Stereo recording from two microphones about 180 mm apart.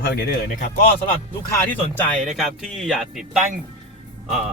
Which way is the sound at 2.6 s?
Centre (ahead or behind).